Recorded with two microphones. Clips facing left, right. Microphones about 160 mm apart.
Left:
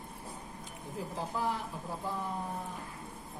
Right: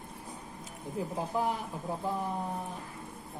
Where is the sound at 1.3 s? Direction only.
20° right (ahead or behind).